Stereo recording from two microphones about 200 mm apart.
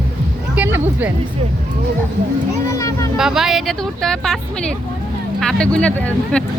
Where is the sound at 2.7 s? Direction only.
15° left (ahead or behind).